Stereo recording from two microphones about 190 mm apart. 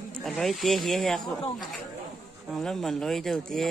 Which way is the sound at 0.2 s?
Centre (ahead or behind).